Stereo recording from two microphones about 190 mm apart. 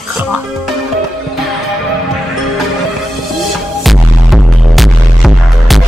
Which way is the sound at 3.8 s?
Centre (ahead or behind).